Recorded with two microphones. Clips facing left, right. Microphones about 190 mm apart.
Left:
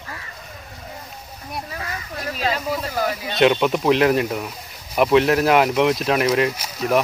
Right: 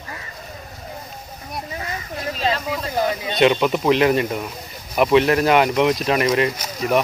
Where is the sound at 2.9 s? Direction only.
20° right (ahead or behind).